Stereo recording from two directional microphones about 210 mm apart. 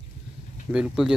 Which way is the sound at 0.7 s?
5° right (ahead or behind).